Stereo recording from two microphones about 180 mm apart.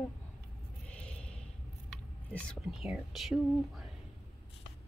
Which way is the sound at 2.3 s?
5° left (ahead or behind).